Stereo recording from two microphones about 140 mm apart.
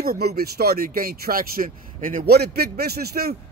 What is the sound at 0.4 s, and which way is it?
Speech, 90° right.